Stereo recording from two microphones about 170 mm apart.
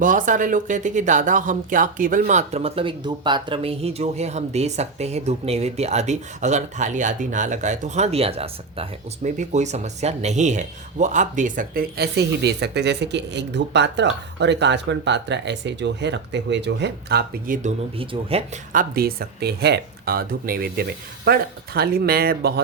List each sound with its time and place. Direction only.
0.0 s speech: 50° right (ahead or behind)
18.7 s speech: 55° right (ahead or behind)